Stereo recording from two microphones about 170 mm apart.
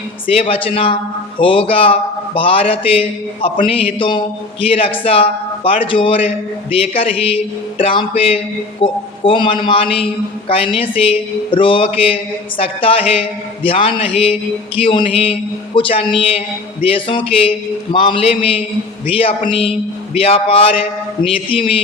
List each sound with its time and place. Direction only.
0.3 s a man's voice: 35° left (ahead or behind)